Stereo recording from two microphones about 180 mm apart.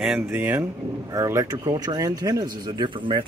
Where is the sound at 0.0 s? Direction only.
5° right (ahead or behind).